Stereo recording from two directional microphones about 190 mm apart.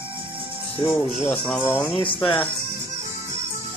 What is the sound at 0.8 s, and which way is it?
Speech, 25° left (ahead or behind).